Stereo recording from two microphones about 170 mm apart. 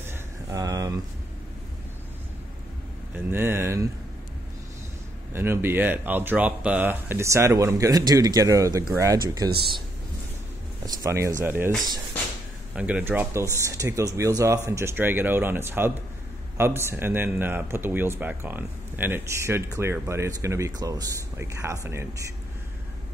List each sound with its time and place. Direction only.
0.0 s a sound: 15° right (ahead or behind)
3.3 s a man's voice: 15° right (ahead or behind)
5.3 s a man's voice: 15° right (ahead or behind)
11.0 s a man's voice: 15° right (ahead or behind)
12.7 s a man's voice: 10° right (ahead or behind)